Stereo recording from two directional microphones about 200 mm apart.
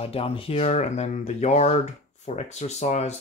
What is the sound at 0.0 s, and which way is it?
Speech, 30° left (ahead or behind).